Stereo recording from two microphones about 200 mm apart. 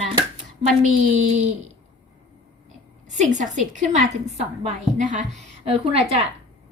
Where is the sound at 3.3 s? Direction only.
40° right (ahead or behind).